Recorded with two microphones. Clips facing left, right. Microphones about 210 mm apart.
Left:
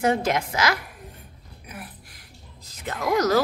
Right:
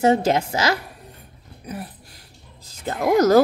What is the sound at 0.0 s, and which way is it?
Speech, 25° right (ahead or behind).